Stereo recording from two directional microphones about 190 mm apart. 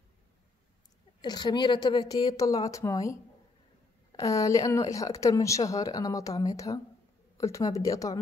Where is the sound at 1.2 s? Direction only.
20° left (ahead or behind).